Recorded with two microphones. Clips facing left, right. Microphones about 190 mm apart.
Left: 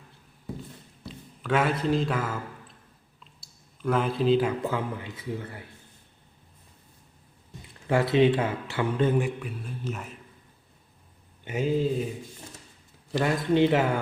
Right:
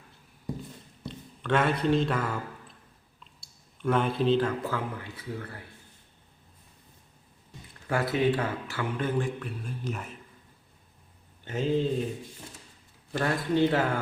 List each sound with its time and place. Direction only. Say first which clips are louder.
1.0 s speech: even; 5° left (ahead or behind)
3.4 s speech: even; centre (ahead or behind)
4.6 s speech: left 3 dB; 20° left (ahead or behind)
7.9 s speech: left 5 dB; 25° left (ahead or behind)
9.2 s speech: left 1 dB; 5° left (ahead or behind)
11.4 s speech: left 1 dB; 10° left (ahead or behind)
13.1 s speech: left 3 dB; 15° left (ahead or behind)